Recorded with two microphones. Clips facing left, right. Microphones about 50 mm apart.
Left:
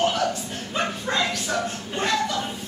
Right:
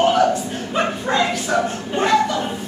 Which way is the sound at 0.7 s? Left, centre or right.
Right.